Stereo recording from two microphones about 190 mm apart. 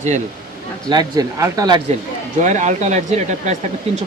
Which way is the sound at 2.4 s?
40° right (ahead or behind).